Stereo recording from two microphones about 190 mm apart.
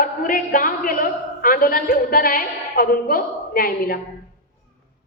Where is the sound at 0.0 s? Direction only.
45° left (ahead or behind).